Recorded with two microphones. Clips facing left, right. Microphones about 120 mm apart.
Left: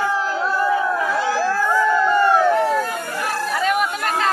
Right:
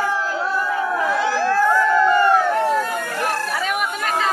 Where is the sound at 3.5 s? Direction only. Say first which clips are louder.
Left 3 dB; 5° right (ahead or behind).